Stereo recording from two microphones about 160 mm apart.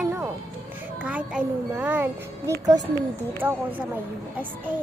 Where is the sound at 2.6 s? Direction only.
25° right (ahead or behind).